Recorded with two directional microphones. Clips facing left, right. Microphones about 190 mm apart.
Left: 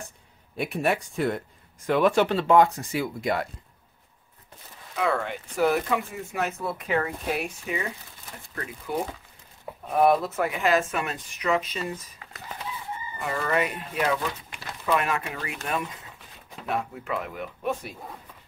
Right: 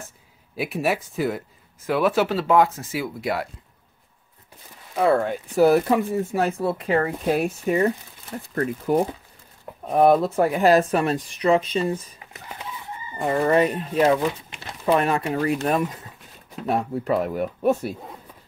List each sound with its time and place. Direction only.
0.6 s speech: 5° right (ahead or behind)
4.9 s speech: 35° right (ahead or behind)
9.8 s speech: 30° right (ahead or behind)
14.1 s speech: 20° right (ahead or behind); by 17.9 s 40° right (ahead or behind)